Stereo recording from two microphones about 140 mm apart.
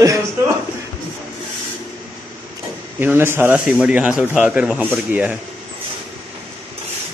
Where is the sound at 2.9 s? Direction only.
15° right (ahead or behind).